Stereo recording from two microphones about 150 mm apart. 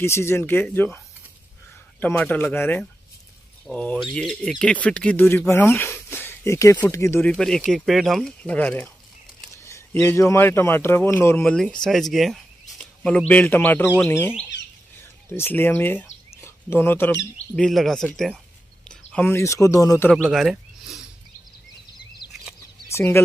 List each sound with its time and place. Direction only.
0.0 s speech: 15° left (ahead or behind)
11.5 s speech: 5° left (ahead or behind)
17.6 s speech: centre (ahead or behind); by 20.1 s 20° left (ahead or behind)
20.2 s a sound: centre (ahead or behind)
22.8 s speech: 15° left (ahead or behind)